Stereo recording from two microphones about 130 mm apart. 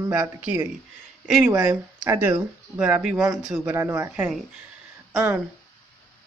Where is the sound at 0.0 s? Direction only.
20° right (ahead or behind).